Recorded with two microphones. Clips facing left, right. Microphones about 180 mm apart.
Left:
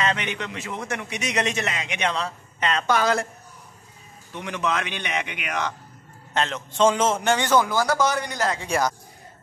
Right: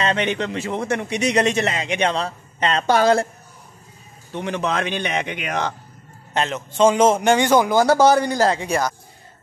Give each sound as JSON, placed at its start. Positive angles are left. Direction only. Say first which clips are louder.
{"t": 0.0, "sound": "a man's voice", "louder": "right 5 dB", "side_deg": -30}
{"t": 4.3, "sound": "a man's voice", "louder": "right 3 dB", "side_deg": -30}
{"t": 6.3, "sound": "a man's voice", "louder": "right 3 dB", "side_deg": -10}
{"t": 7.8, "sound": "a man's voice", "louder": "right 8 dB", "side_deg": -30}